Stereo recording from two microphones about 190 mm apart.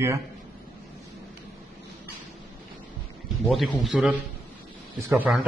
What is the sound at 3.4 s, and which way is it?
A man's voice, centre (ahead or behind).